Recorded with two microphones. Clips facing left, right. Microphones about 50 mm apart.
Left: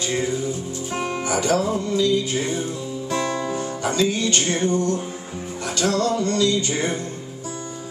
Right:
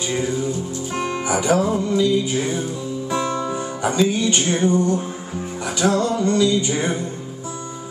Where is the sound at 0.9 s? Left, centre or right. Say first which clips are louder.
Right 1 dB; centre.